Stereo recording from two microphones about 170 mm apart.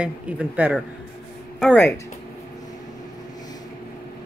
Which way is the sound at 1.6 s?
10° left (ahead or behind).